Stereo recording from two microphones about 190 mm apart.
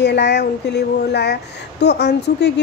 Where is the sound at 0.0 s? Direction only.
60° left (ahead or behind).